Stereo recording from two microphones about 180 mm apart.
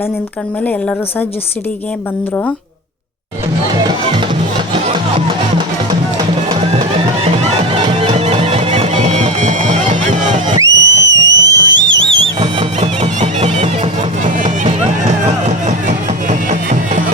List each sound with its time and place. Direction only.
0.6 s a woman's voice: 5° left (ahead or behind)
7.9 s music: 35° right (ahead or behind)
10.6 s music: 20° right (ahead or behind); by 17.0 s 45° right (ahead or behind)